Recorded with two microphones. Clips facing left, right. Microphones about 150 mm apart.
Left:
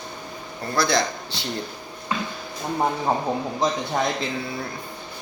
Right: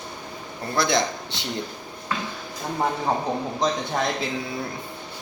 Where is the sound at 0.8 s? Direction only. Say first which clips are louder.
Even; 20° right (ahead or behind).